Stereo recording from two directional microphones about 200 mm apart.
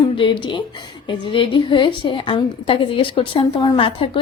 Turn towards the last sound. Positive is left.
turn(degrees=25)  # may be behind; listen again after turning